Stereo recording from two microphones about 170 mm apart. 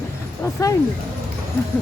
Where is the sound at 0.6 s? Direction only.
20° left (ahead or behind).